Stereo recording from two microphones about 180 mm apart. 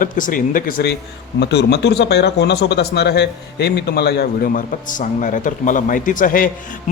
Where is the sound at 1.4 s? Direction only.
70° left (ahead or behind).